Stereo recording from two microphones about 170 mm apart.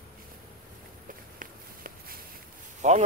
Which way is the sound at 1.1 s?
55° right (ahead or behind).